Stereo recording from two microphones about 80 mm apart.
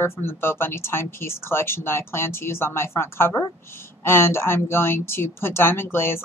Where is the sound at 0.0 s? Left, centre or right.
Left.